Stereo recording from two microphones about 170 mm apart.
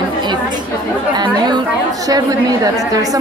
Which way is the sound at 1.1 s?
25° right (ahead or behind).